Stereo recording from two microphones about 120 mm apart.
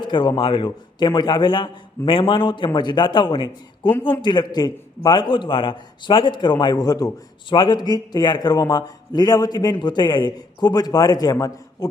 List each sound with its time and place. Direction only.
0.0 s a man's voice: 40° left (ahead or behind)